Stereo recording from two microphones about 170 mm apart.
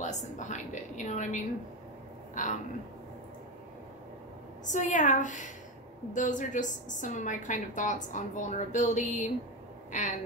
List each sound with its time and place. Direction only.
0.0 s a woman's voice: 45° left (ahead or behind)
4.6 s a woman's voice: 45° left (ahead or behind)